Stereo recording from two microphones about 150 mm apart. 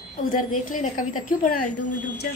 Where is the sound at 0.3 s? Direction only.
65° left (ahead or behind).